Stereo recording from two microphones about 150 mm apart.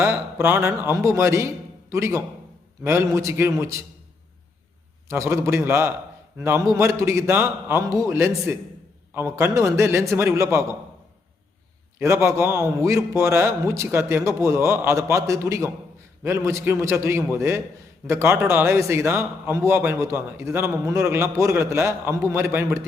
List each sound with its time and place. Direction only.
0.0 s a man's voice: 15° right (ahead or behind)
5.0 s a man's voice: 20° right (ahead or behind)
11.9 s a man's voice: 15° right (ahead or behind)